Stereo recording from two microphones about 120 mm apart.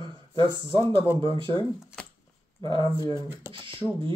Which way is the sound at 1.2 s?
50° right (ahead or behind).